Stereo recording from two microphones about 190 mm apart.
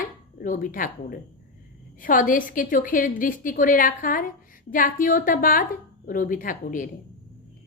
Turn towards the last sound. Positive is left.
turn(degrees=45)  # may be behind; listen again after turning